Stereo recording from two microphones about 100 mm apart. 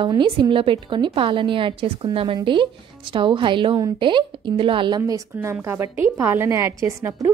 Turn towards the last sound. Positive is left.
turn(degrees=-30)  # may be behind; listen again after turning